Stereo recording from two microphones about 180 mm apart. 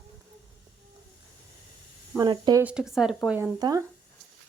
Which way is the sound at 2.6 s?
5° right (ahead or behind).